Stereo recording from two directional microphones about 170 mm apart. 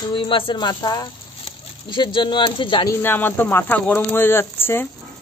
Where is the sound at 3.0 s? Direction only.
10° left (ahead or behind).